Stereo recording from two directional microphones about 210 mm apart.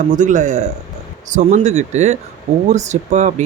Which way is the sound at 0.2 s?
35° right (ahead or behind).